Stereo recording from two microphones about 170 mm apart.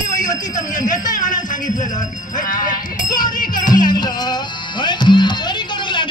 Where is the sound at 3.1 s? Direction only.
25° left (ahead or behind).